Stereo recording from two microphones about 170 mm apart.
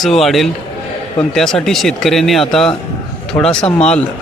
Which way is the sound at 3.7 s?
40° left (ahead or behind).